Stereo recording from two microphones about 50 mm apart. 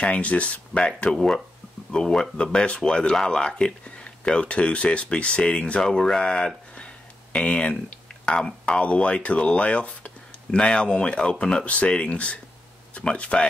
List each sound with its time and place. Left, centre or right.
0.0 s speech: left